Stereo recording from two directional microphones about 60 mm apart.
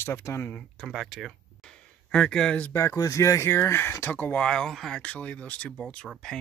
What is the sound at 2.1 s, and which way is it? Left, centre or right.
Speech, centre.